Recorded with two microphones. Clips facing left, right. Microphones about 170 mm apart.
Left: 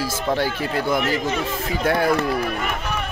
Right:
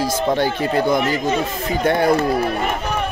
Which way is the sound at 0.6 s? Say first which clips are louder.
Right 5 dB; 50° right (ahead or behind).